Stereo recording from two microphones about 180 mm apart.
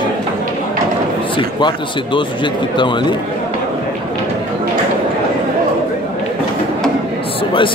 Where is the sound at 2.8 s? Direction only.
25° left (ahead or behind).